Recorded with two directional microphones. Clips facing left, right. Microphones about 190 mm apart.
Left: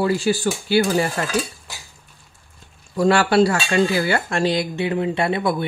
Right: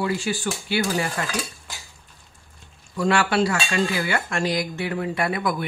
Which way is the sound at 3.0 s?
35° left (ahead or behind).